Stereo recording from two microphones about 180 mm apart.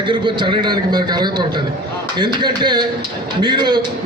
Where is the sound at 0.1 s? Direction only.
25° right (ahead or behind).